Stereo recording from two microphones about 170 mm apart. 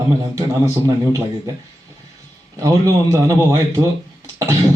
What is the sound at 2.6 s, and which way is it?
A man's voice, 20° right (ahead or behind).